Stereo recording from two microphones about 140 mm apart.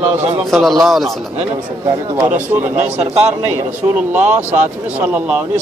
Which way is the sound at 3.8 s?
20° right (ahead or behind).